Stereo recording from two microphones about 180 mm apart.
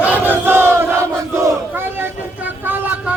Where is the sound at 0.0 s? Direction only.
10° right (ahead or behind).